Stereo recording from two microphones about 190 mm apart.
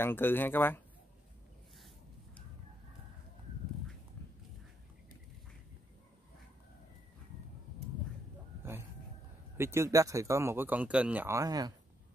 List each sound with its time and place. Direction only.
0.0 s speech: 10° left (ahead or behind)
9.6 s speech: 15° right (ahead or behind)